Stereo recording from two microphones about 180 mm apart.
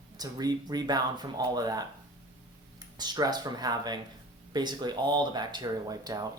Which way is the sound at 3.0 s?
20° right (ahead or behind).